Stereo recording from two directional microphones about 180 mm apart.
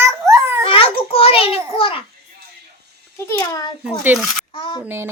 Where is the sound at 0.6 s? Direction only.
30° left (ahead or behind).